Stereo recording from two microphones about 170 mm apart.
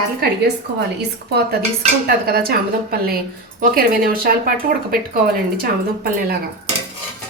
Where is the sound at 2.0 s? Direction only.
65° right (ahead or behind).